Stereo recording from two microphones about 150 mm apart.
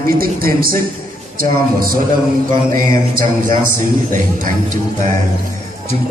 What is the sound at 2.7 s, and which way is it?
Speech, 70° right (ahead or behind).